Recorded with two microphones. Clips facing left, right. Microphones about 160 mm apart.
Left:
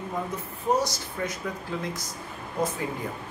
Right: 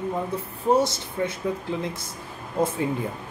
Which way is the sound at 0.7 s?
25° right (ahead or behind).